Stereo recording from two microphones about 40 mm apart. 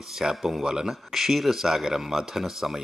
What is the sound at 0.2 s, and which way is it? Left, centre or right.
Speech, centre.